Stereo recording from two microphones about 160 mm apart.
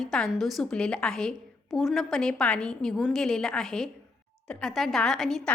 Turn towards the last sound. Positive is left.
turn(degrees=0)  # may be behind; listen again after turning